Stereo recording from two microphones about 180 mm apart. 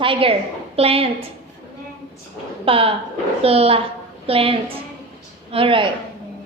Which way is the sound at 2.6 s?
30° right (ahead or behind).